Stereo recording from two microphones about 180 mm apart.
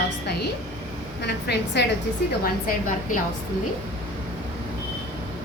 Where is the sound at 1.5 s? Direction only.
70° left (ahead or behind).